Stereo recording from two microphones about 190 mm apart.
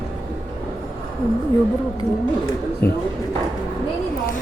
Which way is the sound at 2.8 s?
55° left (ahead or behind).